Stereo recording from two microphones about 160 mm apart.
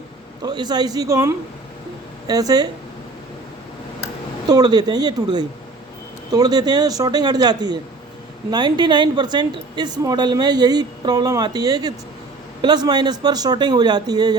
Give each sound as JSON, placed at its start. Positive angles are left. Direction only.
{"t": 0.4, "sound": "a woman's voice", "side_deg": -25}
{"t": 4.4, "sound": "a woman's voice", "side_deg": -25}